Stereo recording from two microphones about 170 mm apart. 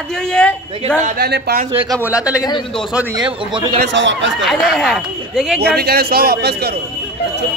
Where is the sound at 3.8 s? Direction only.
90° right.